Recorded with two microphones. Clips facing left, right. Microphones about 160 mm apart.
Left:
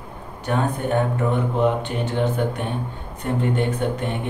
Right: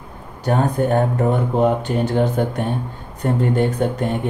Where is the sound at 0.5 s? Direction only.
40° right (ahead or behind).